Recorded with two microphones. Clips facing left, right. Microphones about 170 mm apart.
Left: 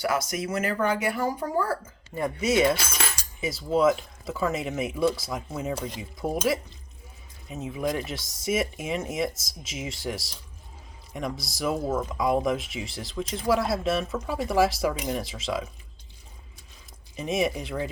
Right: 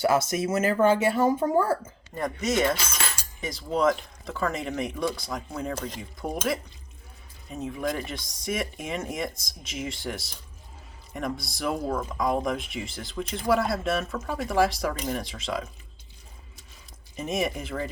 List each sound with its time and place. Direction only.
0.0 s speech: 25° right (ahead or behind)
2.1 s cutlery: 10° left (ahead or behind)
3.4 s speech: 5° left (ahead or behind)
17.2 s speech: centre (ahead or behind)